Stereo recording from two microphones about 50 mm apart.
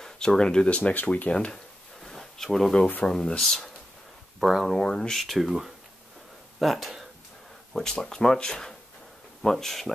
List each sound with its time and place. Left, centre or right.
0.0 s speech: centre
2.0 s a sound: centre
3.1 s speech: centre
4.4 s speech: centre
4.7 s speech: centre
5.2 s speech: centre